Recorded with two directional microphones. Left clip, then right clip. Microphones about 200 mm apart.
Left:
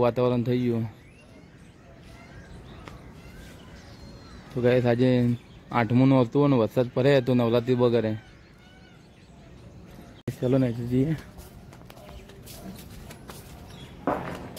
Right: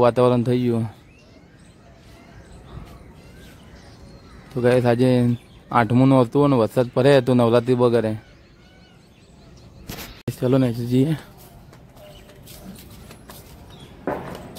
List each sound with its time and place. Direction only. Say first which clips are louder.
0.0 s speech: right 7 dB; 20° right (ahead or behind)
4.6 s speech: right 5 dB; 15° right (ahead or behind)
10.4 s speech: right 5 dB; 25° right (ahead or behind)